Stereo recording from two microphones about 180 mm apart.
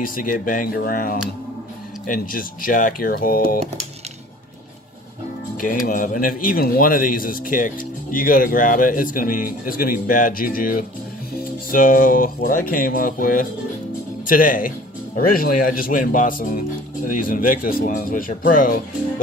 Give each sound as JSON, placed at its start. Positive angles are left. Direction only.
{"t": 0.0, "sound": "speech", "side_deg": 50}
{"t": 5.6, "sound": "speech", "side_deg": 50}